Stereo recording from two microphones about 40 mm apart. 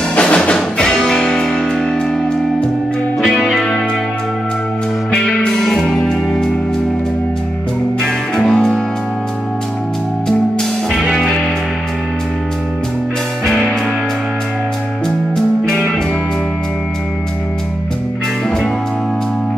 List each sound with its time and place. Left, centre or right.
0.1 s music: left
0.7 s music: centre
1.8 s music: centre
3.5 s music: centre
5.1 s music: left
5.6 s music: centre
8.0 s music: centre
8.5 s music: left
10.9 s music: centre
13.5 s music: centre